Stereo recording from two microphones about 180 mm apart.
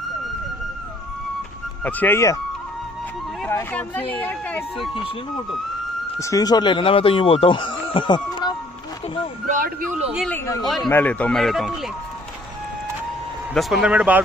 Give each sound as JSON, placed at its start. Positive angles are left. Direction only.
{"t": 1.9, "sound": "speech", "side_deg": 10}
{"t": 3.4, "sound": "a sound", "side_deg": 10}
{"t": 4.1, "sound": "speech", "side_deg": 10}
{"t": 6.1, "sound": "speech", "side_deg": 15}
{"t": 9.5, "sound": "speech", "side_deg": -45}
{"t": 10.1, "sound": "speech", "side_deg": 5}
{"t": 10.4, "sound": "speech", "side_deg": 20}
{"t": 13.6, "sound": "speech", "side_deg": 0}